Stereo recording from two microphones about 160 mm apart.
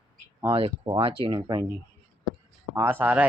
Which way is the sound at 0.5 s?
30° right (ahead or behind).